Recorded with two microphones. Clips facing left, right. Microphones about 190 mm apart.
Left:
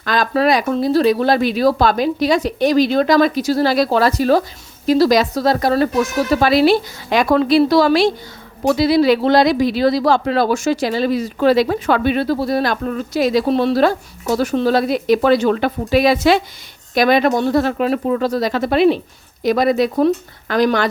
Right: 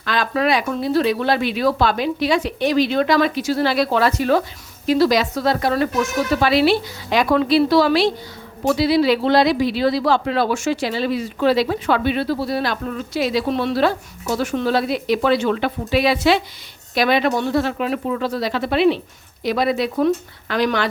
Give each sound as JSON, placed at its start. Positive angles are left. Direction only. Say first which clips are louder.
{"t": 0.0, "sound": "speech", "louder": "left 4 dB", "side_deg": 40}